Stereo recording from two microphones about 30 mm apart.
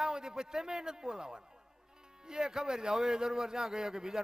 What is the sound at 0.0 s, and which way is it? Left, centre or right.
A man's voice, right.